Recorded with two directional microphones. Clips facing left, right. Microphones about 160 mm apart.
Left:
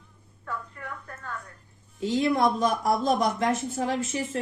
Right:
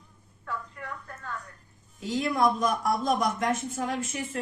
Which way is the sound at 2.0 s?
30° left (ahead or behind).